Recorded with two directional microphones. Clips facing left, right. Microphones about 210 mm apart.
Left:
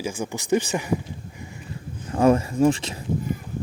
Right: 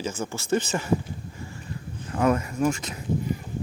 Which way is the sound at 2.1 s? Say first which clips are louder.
Left 5 dB; 30° left (ahead or behind).